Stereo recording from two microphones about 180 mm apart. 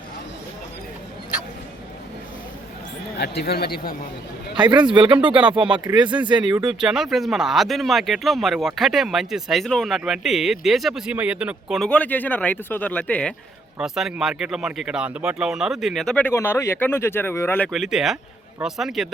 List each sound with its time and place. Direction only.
3.2 s speech: 65° left (ahead or behind)
4.6 s speech: 25° right (ahead or behind)
5.4 s speech: 5° right (ahead or behind)
5.8 s speech: 25° right (ahead or behind)
6.7 s speech: centre (ahead or behind)
13.7 s speech: centre (ahead or behind)
17.7 s speech: centre (ahead or behind)